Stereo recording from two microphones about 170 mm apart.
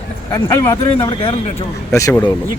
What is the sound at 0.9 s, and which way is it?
Speech, 30° left (ahead or behind).